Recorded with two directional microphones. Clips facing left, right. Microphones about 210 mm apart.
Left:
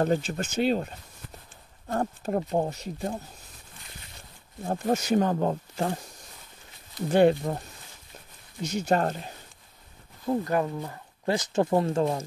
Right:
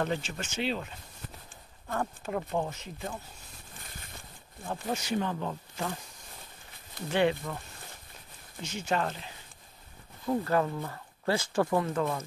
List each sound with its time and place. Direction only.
0.0 s speech: 40° left (ahead or behind)
4.6 s speech: 45° left (ahead or behind)
7.1 s speech: 45° left (ahead or behind)
8.6 s speech: 40° left (ahead or behind)
10.2 s speech: 15° left (ahead or behind)